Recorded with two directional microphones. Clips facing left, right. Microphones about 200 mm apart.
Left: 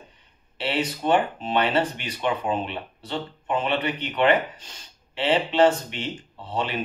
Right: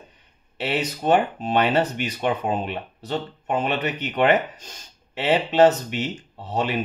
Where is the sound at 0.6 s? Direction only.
45° right (ahead or behind).